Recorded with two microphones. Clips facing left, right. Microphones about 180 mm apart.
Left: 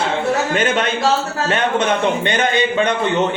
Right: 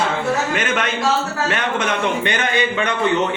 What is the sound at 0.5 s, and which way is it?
A man's voice, 35° left (ahead or behind).